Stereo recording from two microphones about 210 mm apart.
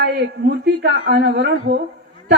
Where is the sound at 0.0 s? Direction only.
50° right (ahead or behind).